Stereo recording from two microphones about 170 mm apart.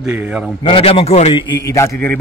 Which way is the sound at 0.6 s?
35° left (ahead or behind).